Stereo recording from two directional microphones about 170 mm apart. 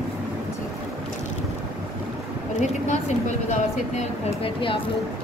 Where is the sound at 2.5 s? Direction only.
45° left (ahead or behind).